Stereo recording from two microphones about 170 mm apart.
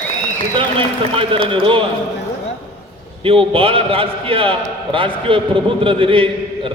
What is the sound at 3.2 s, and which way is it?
A man's voice, 35° right (ahead or behind).